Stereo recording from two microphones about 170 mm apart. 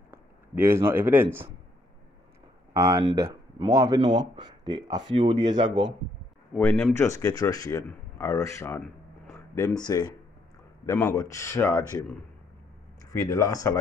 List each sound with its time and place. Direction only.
0.1 s speech: 15° right (ahead or behind)
2.7 s speech: 20° right (ahead or behind)
6.5 s speech: 5° left (ahead or behind); by 10.1 s 25° left (ahead or behind)
10.9 s speech: 10° left (ahead or behind)
13.1 s speech: 15° left (ahead or behind)